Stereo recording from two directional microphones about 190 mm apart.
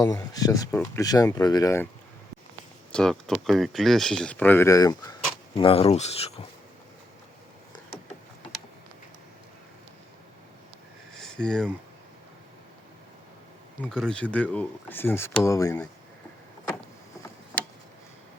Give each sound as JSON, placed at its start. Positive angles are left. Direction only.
{"t": 0.0, "sound": "speech", "side_deg": 20}
{"t": 2.9, "sound": "speech", "side_deg": 5}
{"t": 5.5, "sound": "speech", "side_deg": 30}
{"t": 11.1, "sound": "a sound", "side_deg": 5}
{"t": 13.8, "sound": "speech", "side_deg": 5}